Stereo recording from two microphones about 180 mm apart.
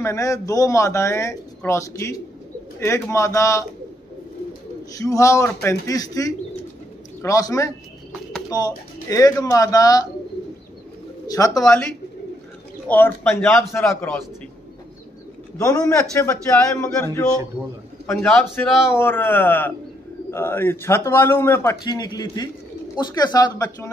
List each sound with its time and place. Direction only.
0.0 s a man's voice: 15° left (ahead or behind)
4.9 s speech: 20° left (ahead or behind)
11.2 s speech: 20° left (ahead or behind)
11.6 s a man's voice: 5° left (ahead or behind)
15.6 s a man's voice: 20° left (ahead or behind)
18.1 s a man's voice: 5° left (ahead or behind)
18.8 s a man's voice: 15° left (ahead or behind)
21.8 s speech: 25° left (ahead or behind)